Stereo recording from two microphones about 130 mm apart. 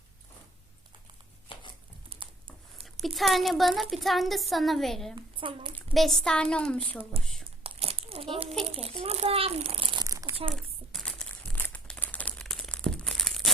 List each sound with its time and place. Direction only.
1.5 s a sound: 40° left (ahead or behind)
2.8 s a woman's voice: centre (ahead or behind)
5.1 s a woman's voice: 40° right (ahead or behind)
5.9 s speech: centre (ahead or behind)
7.6 s crumpling: 50° right (ahead or behind)
8.6 s a child's voice: 50° right (ahead or behind)
10.0 s crumpling: 25° right (ahead or behind)
10.5 s crumpling: 5° left (ahead or behind)